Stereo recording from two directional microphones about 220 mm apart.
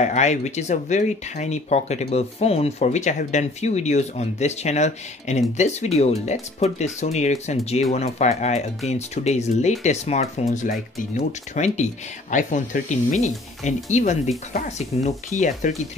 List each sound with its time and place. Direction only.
0.0 s speech: 30° left (ahead or behind)
13.8 s speech: 30° left (ahead or behind)